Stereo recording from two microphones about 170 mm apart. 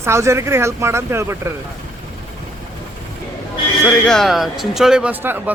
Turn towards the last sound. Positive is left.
turn(degrees=-10)  # may be behind; listen again after turning